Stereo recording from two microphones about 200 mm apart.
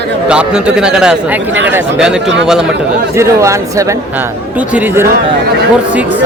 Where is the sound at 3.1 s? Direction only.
15° right (ahead or behind).